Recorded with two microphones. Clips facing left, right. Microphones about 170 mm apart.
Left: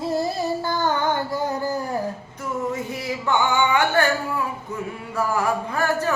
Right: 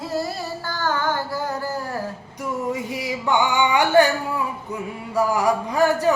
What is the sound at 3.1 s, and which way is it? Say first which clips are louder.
Music: right 1 dB; 15° right (ahead or behind).